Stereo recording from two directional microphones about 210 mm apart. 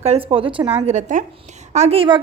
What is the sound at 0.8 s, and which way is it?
A woman's voice, 35° right (ahead or behind).